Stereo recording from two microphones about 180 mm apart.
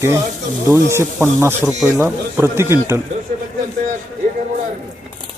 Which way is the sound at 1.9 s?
15° right (ahead or behind).